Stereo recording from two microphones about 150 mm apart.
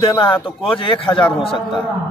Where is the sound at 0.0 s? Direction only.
35° left (ahead or behind).